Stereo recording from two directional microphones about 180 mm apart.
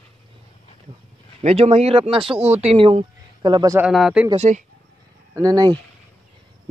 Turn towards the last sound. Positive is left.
turn(degrees=-20)  # may be behind; listen again after turning